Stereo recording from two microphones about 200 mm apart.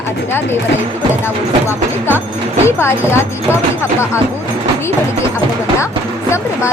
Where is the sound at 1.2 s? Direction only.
10° left (ahead or behind).